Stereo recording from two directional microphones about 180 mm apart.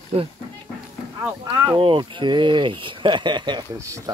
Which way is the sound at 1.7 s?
25° right (ahead or behind).